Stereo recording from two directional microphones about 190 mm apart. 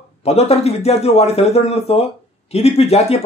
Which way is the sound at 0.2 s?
35° left (ahead or behind).